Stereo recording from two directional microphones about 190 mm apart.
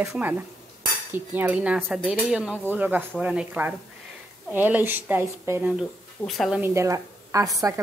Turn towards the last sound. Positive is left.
turn(degrees=-15)  # may be behind; listen again after turning